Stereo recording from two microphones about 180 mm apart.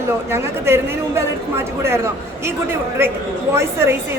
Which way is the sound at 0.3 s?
15° right (ahead or behind).